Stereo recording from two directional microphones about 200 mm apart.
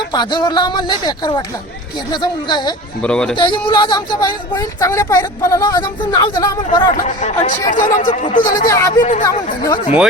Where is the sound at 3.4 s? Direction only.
25° left (ahead or behind).